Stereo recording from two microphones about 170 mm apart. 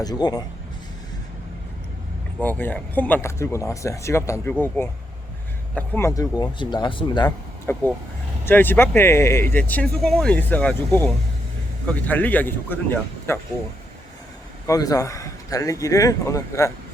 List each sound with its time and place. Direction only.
0.0 s a man's voice: 25° left (ahead or behind)
2.4 s speech: 10° left (ahead or behind)
5.7 s a man's voice: 10° left (ahead or behind)
7.7 s speech: 15° left (ahead or behind)
14.7 s a man's voice: 20° left (ahead or behind)